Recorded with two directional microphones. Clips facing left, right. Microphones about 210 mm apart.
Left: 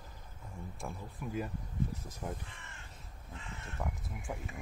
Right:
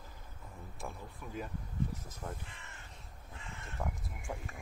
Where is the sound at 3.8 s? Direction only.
Centre (ahead or behind).